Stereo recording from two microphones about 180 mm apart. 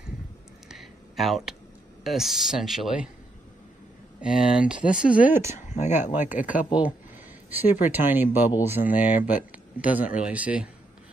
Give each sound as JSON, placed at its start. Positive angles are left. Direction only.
{"t": 0.7, "sound": "a sound", "side_deg": 0}
{"t": 2.0, "sound": "speech", "side_deg": 0}
{"t": 4.2, "sound": "speech", "side_deg": -5}
{"t": 5.7, "sound": "speech", "side_deg": 40}
{"t": 6.1, "sound": "speech", "side_deg": -10}